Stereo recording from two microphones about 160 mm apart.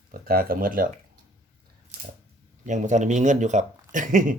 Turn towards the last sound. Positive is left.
turn(degrees=-55)  # may be behind; listen again after turning